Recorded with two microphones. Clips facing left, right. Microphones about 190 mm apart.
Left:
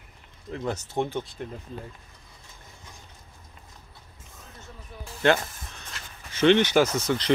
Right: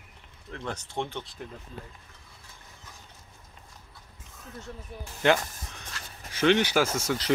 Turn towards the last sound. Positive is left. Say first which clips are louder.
# left 3 dB
turn(degrees=-10)  # may be behind; listen again after turning